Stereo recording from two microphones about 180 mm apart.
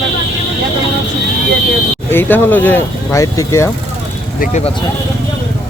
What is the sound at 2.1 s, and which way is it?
Speech, 10° left (ahead or behind).